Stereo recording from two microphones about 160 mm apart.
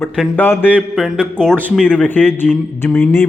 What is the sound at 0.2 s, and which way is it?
A man's voice, 10° left (ahead or behind).